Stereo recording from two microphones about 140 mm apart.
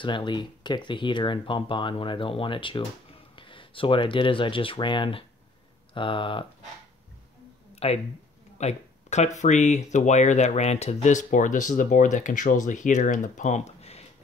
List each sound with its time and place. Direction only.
0.0 s speech: 35° left (ahead or behind)
7.7 s a sound: 45° left (ahead or behind)
8.5 s speech: 55° left (ahead or behind)